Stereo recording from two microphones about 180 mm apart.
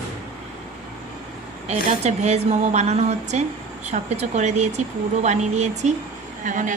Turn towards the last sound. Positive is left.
turn(degrees=-45)  # may be behind; listen again after turning